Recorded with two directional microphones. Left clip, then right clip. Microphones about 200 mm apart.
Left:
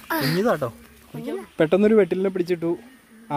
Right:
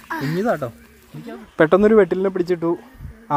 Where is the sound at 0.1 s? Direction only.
55° left (ahead or behind).